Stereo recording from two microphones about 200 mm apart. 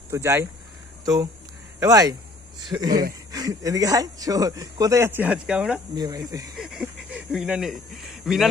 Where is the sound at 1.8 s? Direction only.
20° right (ahead or behind).